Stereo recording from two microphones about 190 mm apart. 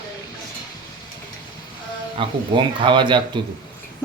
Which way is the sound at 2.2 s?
25° right (ahead or behind).